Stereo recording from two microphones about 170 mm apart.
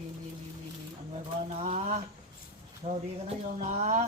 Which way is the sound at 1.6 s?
40° right (ahead or behind).